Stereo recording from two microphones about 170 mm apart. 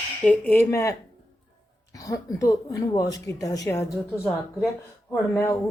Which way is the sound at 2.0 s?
20° left (ahead or behind).